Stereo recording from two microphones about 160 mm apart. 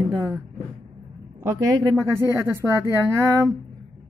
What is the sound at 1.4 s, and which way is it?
A woman's voice, 20° right (ahead or behind).